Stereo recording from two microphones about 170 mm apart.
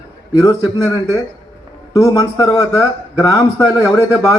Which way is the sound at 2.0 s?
20° left (ahead or behind).